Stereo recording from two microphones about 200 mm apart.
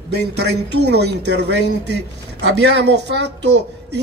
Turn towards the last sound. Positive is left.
turn(degrees=-60)  # may be behind; listen again after turning